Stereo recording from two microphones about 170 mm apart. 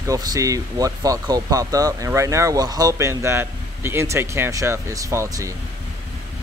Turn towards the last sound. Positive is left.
turn(degrees=-15)  # may be behind; listen again after turning